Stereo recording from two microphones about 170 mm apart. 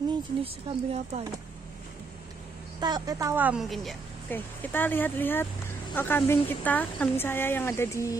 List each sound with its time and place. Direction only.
0.4 s speech: 35° right (ahead or behind)
2.8 s a woman's voice: 25° right (ahead or behind); by 3.9 s centre (ahead or behind)
4.3 s speech: 10° left (ahead or behind)